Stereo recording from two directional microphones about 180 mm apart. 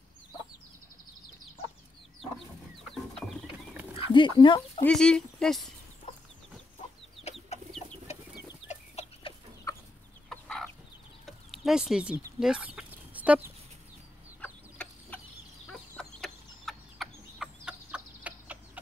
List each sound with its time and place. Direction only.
2.9 s chicken: centre (ahead or behind)
3.9 s speech: 25° left (ahead or behind)
4.8 s speech: 5° left (ahead or behind)
7.5 s chicken: 40° left (ahead or behind)
9.7 s chicken: 20° left (ahead or behind)
10.3 s chicken: centre (ahead or behind)
14.4 s chicken: 10° left (ahead or behind)